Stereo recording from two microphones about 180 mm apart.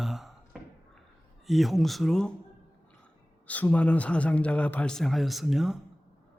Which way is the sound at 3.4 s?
10° left (ahead or behind).